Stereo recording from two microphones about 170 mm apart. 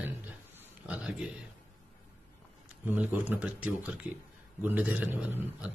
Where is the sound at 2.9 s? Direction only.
10° right (ahead or behind).